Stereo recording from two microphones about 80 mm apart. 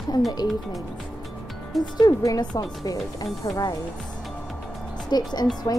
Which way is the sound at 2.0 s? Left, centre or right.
Left.